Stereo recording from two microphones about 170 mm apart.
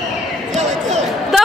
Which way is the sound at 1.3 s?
Centre (ahead or behind).